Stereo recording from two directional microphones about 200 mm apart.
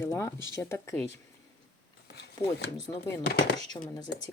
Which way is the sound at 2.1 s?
55° left (ahead or behind).